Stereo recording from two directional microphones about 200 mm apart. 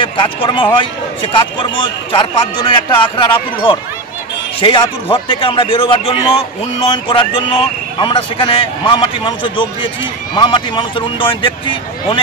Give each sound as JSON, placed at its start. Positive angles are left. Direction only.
{"t": 0.0, "sound": "a man's voice", "side_deg": 25}